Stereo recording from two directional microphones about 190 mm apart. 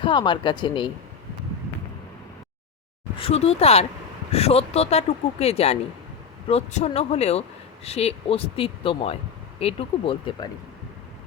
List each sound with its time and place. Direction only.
0.0 s speech: 25° left (ahead or behind)
3.2 s speech: 30° left (ahead or behind)